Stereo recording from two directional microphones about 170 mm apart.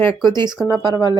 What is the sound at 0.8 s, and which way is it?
Speech, 20° left (ahead or behind).